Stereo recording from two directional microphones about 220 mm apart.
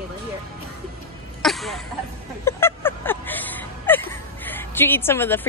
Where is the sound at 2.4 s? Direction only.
10° left (ahead or behind).